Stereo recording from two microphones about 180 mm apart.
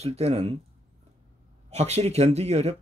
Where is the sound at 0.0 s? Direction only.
35° right (ahead or behind).